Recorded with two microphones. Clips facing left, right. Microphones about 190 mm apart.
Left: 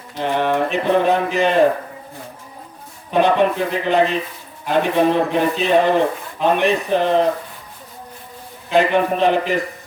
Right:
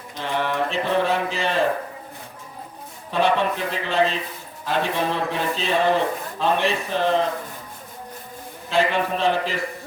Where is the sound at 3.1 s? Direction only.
15° left (ahead or behind).